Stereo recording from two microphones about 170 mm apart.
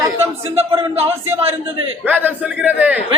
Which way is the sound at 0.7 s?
35° right (ahead or behind).